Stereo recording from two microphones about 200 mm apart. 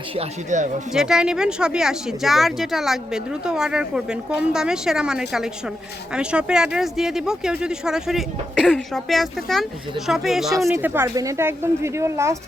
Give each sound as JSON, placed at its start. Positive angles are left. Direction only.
{"t": 0.2, "sound": "speech", "side_deg": -40}
{"t": 0.9, "sound": "speech", "side_deg": -5}